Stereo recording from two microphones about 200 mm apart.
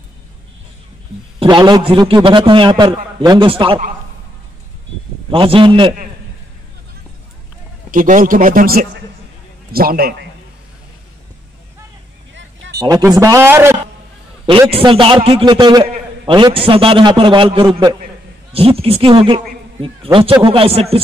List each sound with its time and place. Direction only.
1.4 s a man's voice: 20° right (ahead or behind)
5.3 s a man's voice: 25° right (ahead or behind)
7.9 s a man's voice: 40° right (ahead or behind)
12.7 s speech: 20° right (ahead or behind)
14.7 s a man's voice: 25° right (ahead or behind)